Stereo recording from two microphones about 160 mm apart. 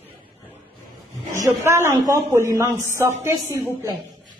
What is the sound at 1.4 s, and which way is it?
A man's voice, 15° right (ahead or behind).